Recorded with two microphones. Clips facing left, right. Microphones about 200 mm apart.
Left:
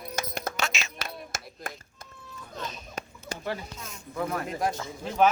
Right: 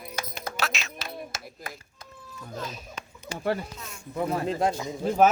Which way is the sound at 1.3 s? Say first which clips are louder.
Left 1 dB; 50° left (ahead or behind).